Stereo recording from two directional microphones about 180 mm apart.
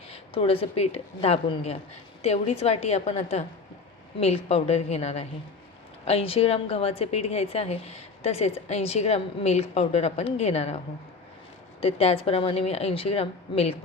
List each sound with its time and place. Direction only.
0.1 s a woman's voice: 30° left (ahead or behind)
11.8 s a woman's voice: 35° left (ahead or behind)